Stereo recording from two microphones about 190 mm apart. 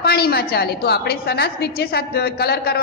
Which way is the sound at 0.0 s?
55° left (ahead or behind).